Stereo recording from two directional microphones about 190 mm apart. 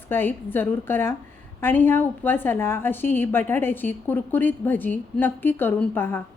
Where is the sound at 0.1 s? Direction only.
10° left (ahead or behind).